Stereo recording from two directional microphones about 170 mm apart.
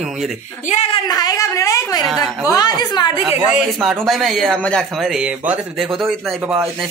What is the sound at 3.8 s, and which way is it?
A man's voice, centre (ahead or behind).